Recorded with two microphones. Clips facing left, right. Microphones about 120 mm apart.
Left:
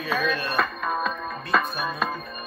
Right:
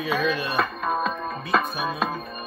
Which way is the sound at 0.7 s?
25° right (ahead or behind).